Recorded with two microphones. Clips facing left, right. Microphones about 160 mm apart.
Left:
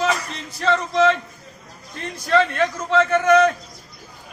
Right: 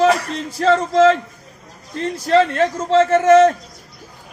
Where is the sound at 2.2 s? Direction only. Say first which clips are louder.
Right 4 dB; 35° right (ahead or behind).